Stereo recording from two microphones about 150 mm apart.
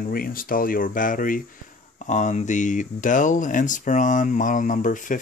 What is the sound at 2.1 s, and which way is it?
Speech, 55° left (ahead or behind).